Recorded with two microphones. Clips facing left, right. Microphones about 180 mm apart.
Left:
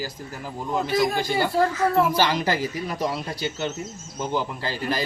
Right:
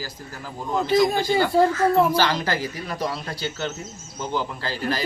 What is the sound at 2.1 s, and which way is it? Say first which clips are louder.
Speech: even; 15° left (ahead or behind).